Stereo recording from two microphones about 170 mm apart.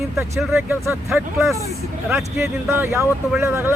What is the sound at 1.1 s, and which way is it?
Speech, centre (ahead or behind).